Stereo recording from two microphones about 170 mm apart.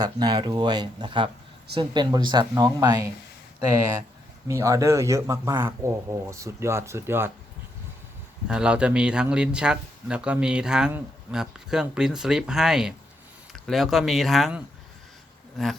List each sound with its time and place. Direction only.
0.0 s speech: 25° right (ahead or behind)
4.4 s speech: 20° right (ahead or behind)
8.4 s speech: 5° right (ahead or behind)